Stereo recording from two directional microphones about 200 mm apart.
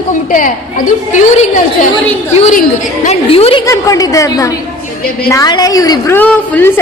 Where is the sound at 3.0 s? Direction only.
30° left (ahead or behind).